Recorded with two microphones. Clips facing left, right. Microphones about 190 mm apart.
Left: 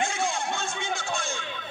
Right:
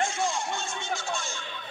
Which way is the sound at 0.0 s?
60° left (ahead or behind).